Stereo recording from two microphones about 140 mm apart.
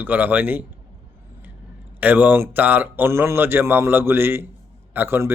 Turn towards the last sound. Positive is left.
turn(degrees=-15)  # may be behind; listen again after turning